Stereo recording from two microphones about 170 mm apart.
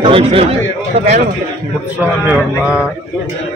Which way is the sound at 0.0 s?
35° right (ahead or behind).